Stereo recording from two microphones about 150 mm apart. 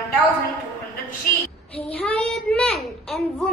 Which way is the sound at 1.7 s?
40° left (ahead or behind).